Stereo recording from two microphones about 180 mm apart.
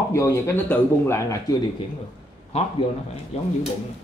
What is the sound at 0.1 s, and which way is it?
Speech, 15° left (ahead or behind).